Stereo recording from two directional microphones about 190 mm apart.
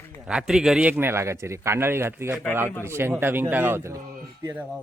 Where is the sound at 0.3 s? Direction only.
5° right (ahead or behind).